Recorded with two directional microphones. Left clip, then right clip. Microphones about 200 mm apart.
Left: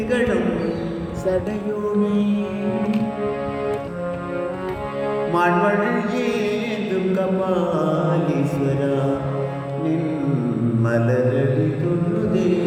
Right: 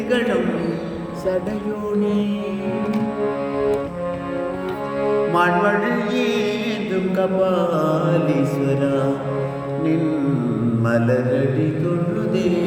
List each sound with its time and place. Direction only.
0.1 s mantra: 15° right (ahead or behind)
5.0 s music: 15° right (ahead or behind)
7.2 s mantra: 20° right (ahead or behind)
10.8 s mantra: 15° right (ahead or behind)